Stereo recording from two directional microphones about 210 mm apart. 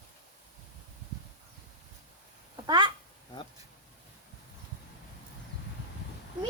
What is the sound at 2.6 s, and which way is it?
Speech, 20° right (ahead or behind).